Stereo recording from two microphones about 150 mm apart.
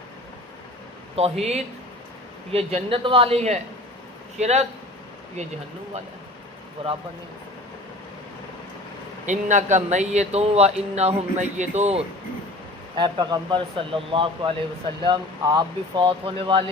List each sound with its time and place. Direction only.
1.1 s speech: 40° right (ahead or behind)
6.8 s speech: 40° right (ahead or behind)
9.2 s speech: 55° right (ahead or behind)
13.0 s speech: 30° right (ahead or behind)